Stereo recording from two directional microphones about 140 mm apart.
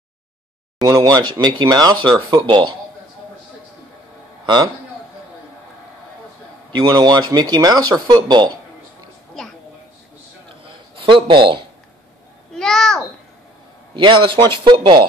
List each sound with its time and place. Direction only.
0.8 s speech: 25° right (ahead or behind)
6.7 s speech: 30° right (ahead or behind)
11.0 s speech: 40° right (ahead or behind)
12.5 s a child's voice: 5° left (ahead or behind)
13.9 s speech: 35° right (ahead or behind)